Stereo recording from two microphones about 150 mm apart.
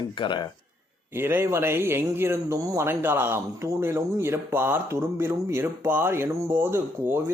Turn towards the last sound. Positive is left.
turn(degrees=-15)  # may be behind; listen again after turning